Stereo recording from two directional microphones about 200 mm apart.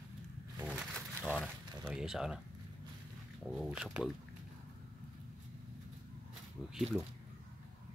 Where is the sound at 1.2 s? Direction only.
5° left (ahead or behind).